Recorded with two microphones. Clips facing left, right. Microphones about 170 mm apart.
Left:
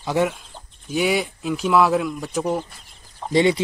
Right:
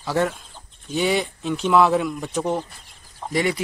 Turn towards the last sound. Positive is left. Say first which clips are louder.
# left 5 dB
turn(degrees=25)  # may be behind; listen again after turning